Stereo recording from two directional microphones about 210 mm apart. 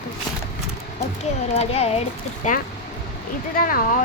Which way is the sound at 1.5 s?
30° left (ahead or behind).